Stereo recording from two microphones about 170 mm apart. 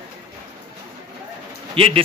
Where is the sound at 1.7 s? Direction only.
35° right (ahead or behind).